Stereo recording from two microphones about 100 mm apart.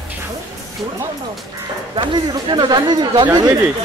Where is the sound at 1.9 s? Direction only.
50° right (ahead or behind).